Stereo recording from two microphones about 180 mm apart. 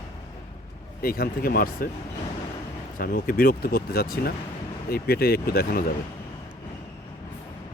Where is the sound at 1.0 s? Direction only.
55° left (ahead or behind).